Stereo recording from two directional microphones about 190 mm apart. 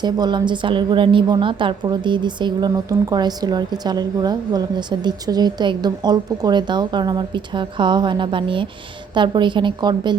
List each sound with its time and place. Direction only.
0.0 s a woman's voice: 25° right (ahead or behind)